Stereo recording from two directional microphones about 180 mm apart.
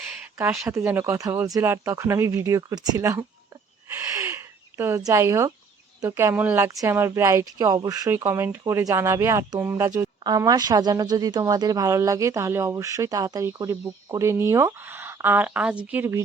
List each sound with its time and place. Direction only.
0.7 s speech: 15° right (ahead or behind)
3.9 s a sound: 15° right (ahead or behind)
4.8 s speech: 15° right (ahead or behind)